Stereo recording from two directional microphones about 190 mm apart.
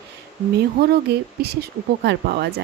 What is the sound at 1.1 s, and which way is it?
Speech, 60° right (ahead or behind).